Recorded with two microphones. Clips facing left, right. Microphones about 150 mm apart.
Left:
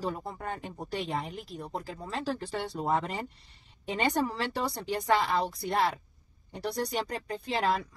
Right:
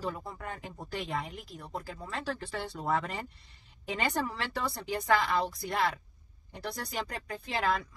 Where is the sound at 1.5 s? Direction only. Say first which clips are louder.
Left 3 dB; 35° left (ahead or behind).